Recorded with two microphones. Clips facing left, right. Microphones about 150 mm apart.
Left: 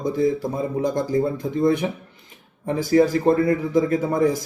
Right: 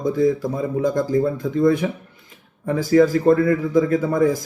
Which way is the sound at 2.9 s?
35° left (ahead or behind).